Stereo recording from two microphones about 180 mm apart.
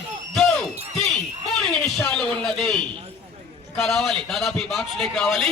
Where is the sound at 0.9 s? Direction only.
Centre (ahead or behind).